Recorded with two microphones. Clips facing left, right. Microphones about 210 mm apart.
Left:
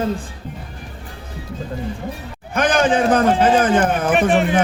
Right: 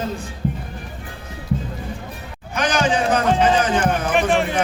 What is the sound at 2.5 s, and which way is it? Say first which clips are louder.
A man's voice: left 3 dB; 55° left (ahead or behind).